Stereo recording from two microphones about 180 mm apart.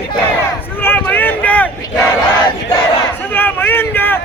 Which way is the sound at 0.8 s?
10° left (ahead or behind).